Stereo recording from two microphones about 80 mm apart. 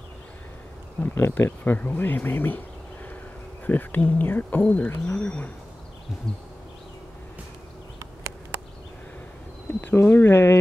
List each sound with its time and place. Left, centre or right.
1.0 s speech: left
3.6 s speech: left
9.8 s speech: left